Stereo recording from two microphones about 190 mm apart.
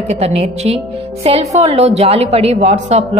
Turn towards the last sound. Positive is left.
turn(degrees=-35)  # may be behind; listen again after turning